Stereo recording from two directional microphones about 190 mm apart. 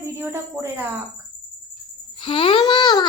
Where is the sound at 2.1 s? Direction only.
25° left (ahead or behind).